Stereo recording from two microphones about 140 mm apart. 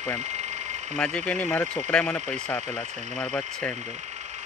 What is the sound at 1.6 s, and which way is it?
Speech, 60° right (ahead or behind).